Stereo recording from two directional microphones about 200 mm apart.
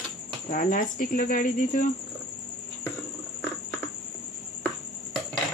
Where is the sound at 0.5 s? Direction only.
45° left (ahead or behind).